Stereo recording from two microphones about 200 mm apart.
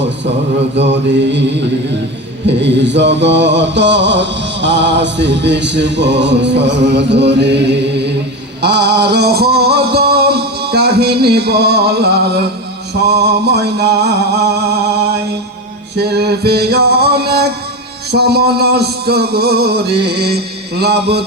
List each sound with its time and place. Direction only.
2.5 s mantra: 60° right (ahead or behind)
8.6 s music: 55° right (ahead or behind)
13.1 s mantra: 55° right (ahead or behind)
16.0 s music: 55° right (ahead or behind)